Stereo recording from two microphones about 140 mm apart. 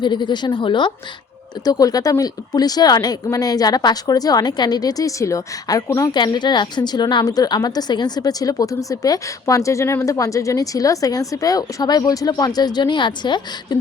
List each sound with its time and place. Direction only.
0.0 s speech: 35° left (ahead or behind)